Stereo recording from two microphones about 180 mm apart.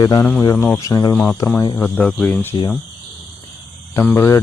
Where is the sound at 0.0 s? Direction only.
25° left (ahead or behind).